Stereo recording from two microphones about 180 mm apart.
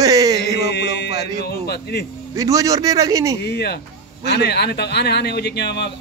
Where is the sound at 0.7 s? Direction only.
65° left (ahead or behind).